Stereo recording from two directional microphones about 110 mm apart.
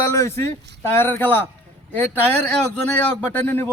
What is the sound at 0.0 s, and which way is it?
A man's voice, 25° left (ahead or behind).